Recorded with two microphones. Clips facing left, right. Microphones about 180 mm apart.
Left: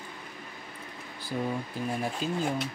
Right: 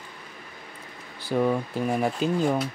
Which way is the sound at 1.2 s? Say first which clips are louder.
Right 8 dB; 75° right (ahead or behind).